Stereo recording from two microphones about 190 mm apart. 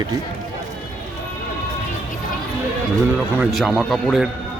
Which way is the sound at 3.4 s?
Centre (ahead or behind).